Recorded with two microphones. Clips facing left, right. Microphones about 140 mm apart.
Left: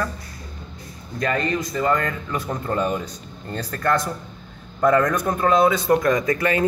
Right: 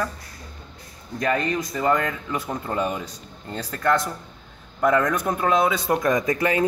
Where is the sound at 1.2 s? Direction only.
15° right (ahead or behind).